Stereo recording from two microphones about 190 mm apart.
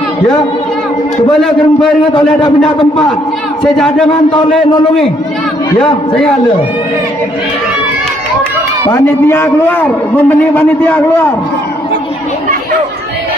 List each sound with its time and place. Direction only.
3.7 s a man's voice: 5° left (ahead or behind)
8.9 s a man's voice: 10° left (ahead or behind)